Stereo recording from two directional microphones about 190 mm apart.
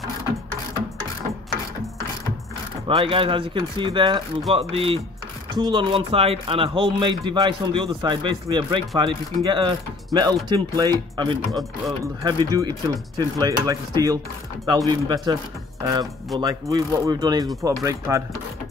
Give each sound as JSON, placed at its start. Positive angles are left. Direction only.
{"t": 2.9, "sound": "speech", "side_deg": -30}